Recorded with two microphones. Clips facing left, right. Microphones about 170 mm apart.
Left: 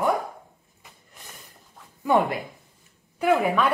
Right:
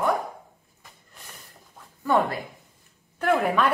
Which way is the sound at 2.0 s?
15° left (ahead or behind).